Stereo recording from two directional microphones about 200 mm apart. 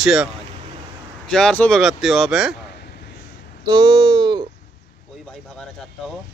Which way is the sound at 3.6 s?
20° right (ahead or behind).